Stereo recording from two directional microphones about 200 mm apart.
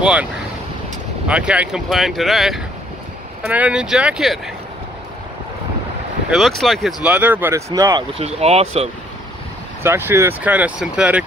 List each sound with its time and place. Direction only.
0.0 s speech: 5° right (ahead or behind)
6.3 s speech: centre (ahead or behind); by 8.2 s 20° right (ahead or behind)
8.2 s speech: 30° right (ahead or behind)
9.8 s speech: 10° right (ahead or behind)